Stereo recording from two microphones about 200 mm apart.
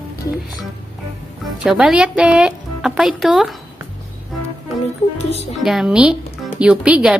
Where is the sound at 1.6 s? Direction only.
5° right (ahead or behind).